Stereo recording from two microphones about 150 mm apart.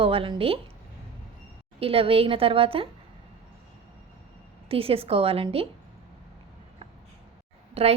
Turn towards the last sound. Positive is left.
turn(degrees=-40)  # may be behind; listen again after turning